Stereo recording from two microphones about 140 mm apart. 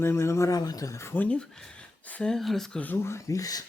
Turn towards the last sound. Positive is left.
turn(degrees=25)  # may be behind; listen again after turning